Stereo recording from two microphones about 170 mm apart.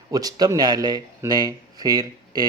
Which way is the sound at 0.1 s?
20° right (ahead or behind).